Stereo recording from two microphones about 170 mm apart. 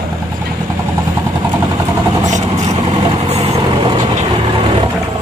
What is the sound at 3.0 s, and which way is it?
Vehicle, 30° right (ahead or behind).